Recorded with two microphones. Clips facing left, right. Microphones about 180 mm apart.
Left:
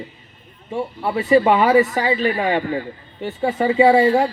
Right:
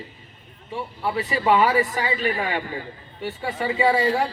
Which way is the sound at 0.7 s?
40° left (ahead or behind).